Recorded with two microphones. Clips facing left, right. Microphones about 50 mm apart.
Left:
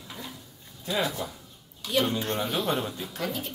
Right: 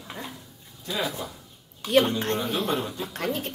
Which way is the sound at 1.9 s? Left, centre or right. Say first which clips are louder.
Right 5 dB; right.